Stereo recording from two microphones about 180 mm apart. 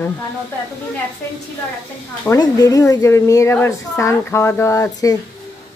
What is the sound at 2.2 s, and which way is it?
A woman's voice, 20° left (ahead or behind).